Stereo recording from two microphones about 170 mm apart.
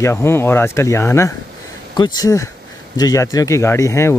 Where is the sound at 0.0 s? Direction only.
15° left (ahead or behind).